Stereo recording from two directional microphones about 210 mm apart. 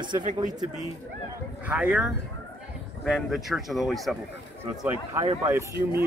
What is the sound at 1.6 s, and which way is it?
Speech, 5° right (ahead or behind).